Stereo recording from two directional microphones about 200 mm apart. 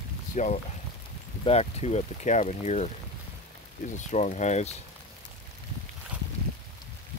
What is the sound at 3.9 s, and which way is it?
Speech, 35° left (ahead or behind).